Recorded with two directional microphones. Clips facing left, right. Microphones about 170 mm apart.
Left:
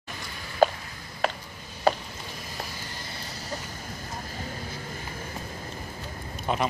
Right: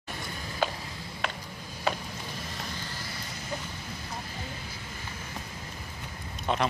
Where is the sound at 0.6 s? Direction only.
40° left (ahead or behind).